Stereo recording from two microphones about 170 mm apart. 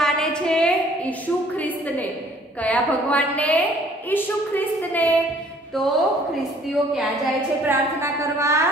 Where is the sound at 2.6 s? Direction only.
10° left (ahead or behind).